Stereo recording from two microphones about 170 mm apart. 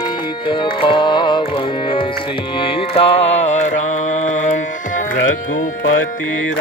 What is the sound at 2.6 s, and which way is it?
Music, 40° left (ahead or behind).